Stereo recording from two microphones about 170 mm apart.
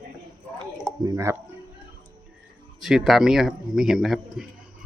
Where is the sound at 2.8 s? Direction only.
Centre (ahead or behind).